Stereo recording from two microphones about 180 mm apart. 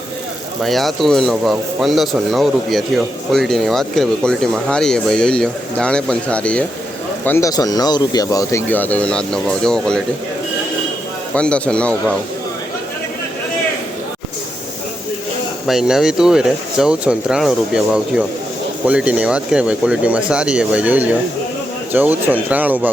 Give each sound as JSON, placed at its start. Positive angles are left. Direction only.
{"t": 0.6, "sound": "speech", "side_deg": 0}
{"t": 11.3, "sound": "speech", "side_deg": 5}
{"t": 15.6, "sound": "speech", "side_deg": 0}